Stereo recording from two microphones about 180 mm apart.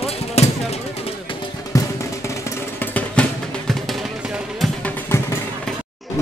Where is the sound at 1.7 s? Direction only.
20° left (ahead or behind).